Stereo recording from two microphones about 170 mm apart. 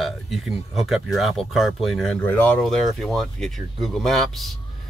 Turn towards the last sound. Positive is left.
turn(degrees=0)  # may be behind; listen again after turning